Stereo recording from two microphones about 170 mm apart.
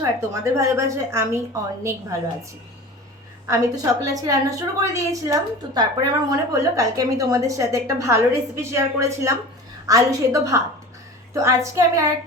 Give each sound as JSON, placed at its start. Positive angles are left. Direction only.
{"t": 0.0, "sound": "a woman's voice", "side_deg": -15}
{"t": 3.4, "sound": "a woman's voice", "side_deg": -20}